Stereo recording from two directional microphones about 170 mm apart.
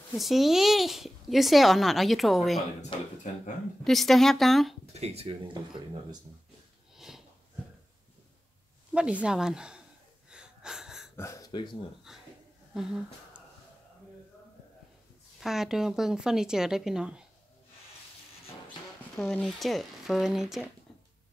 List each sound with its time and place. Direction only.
0.2 s speech: centre (ahead or behind)
3.3 s speech: 45° left (ahead or behind)
3.8 s speech: centre (ahead or behind)
4.9 s speech: 40° right (ahead or behind)
7.0 s sniff: centre (ahead or behind)
8.9 s speech: 5° right (ahead or behind)
10.3 s wheeze: 5° right (ahead or behind)
11.1 s speech: 20° left (ahead or behind)
12.1 s a sound: centre (ahead or behind)
12.7 s speech: 5° right (ahead or behind)
15.4 s speech: centre (ahead or behind)
19.1 s speech: 5° left (ahead or behind)